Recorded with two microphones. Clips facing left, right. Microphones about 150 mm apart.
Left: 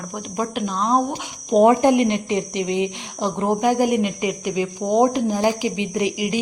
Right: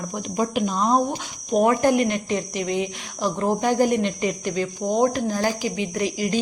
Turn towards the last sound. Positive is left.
turn(degrees=15)  # may be behind; listen again after turning